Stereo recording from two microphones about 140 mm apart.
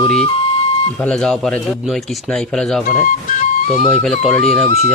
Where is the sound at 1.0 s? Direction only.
5° left (ahead or behind).